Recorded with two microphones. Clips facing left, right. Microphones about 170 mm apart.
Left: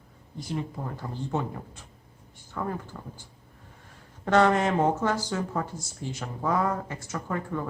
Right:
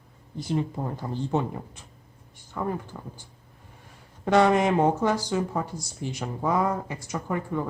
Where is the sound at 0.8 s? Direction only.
20° right (ahead or behind).